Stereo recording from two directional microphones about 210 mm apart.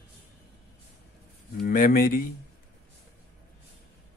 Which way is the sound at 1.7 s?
45° left (ahead or behind).